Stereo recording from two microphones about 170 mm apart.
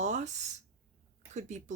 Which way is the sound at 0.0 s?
45° right (ahead or behind).